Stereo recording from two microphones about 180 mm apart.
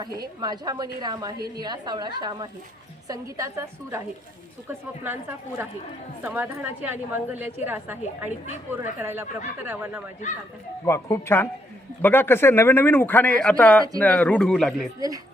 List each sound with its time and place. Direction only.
0.3 s a woman's voice: 20° right (ahead or behind)
5.0 s a woman's voice: 10° right (ahead or behind)
10.2 s speech: 40° left (ahead or behind)
10.8 s speech: 15° left (ahead or behind)